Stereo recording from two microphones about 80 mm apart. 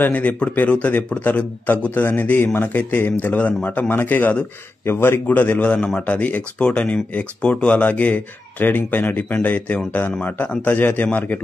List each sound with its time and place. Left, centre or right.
0.0 s speech: left